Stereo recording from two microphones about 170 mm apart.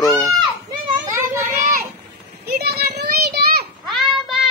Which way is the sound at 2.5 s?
65° right (ahead or behind).